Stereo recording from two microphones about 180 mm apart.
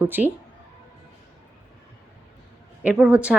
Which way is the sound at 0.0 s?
10° right (ahead or behind).